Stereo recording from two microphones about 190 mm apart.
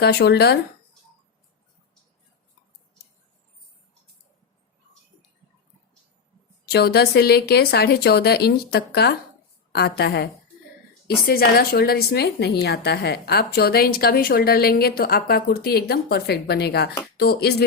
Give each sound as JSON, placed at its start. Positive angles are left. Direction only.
{"t": 0.0, "sound": "a woman's voice", "side_deg": 60}
{"t": 6.7, "sound": "a woman's voice", "side_deg": 55}